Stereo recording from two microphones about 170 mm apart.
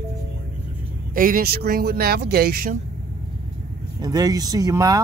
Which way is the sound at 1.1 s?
55° right (ahead or behind).